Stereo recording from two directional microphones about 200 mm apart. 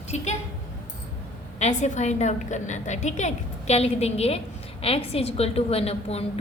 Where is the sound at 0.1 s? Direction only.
35° left (ahead or behind).